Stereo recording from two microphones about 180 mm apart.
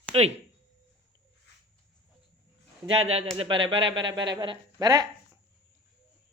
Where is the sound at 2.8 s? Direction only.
35° right (ahead or behind).